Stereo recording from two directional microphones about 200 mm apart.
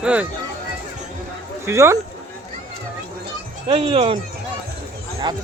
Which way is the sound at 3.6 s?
25° right (ahead or behind).